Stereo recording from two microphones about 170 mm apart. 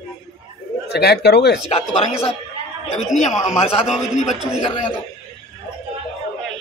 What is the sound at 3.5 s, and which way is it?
Speech, 40° left (ahead or behind).